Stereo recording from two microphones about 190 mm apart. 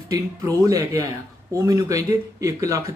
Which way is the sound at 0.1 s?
20° right (ahead or behind).